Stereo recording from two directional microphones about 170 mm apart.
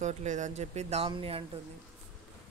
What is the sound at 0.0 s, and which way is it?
Speech, 45° right (ahead or behind).